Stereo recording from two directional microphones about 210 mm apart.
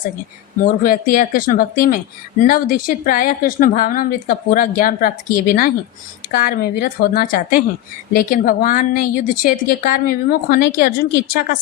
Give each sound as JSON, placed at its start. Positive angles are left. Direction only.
{"t": 0.6, "sound": "a woman's voice", "side_deg": 40}